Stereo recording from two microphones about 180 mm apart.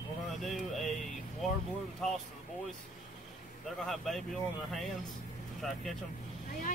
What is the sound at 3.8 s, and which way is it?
Speech, centre (ahead or behind).